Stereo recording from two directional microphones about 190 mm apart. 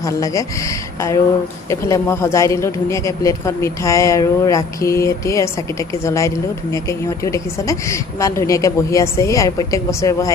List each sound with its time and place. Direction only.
0.0 s speech: 15° left (ahead or behind)
1.7 s speech: 15° left (ahead or behind)